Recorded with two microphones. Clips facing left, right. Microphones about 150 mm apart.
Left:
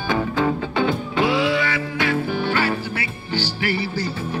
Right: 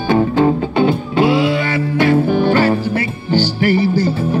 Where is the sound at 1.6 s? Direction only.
50° right (ahead or behind).